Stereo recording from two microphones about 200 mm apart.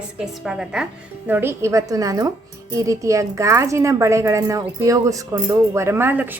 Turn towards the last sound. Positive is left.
turn(degrees=-10)  # may be behind; listen again after turning